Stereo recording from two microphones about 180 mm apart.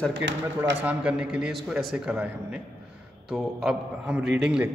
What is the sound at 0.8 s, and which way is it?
A man's voice, 5° right (ahead or behind).